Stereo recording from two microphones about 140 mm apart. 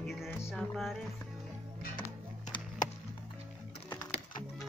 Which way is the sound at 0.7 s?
Centre (ahead or behind).